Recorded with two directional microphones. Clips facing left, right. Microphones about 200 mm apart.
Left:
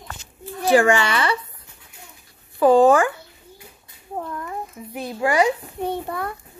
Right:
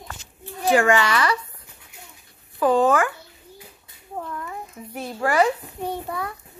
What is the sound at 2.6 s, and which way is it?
Speech, 30° left (ahead or behind).